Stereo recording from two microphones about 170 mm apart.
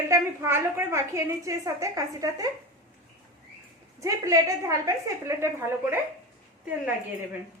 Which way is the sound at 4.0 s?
20° right (ahead or behind).